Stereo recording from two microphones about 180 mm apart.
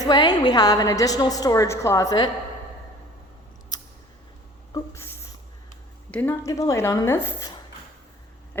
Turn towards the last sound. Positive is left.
turn(degrees=15)  # may be behind; listen again after turning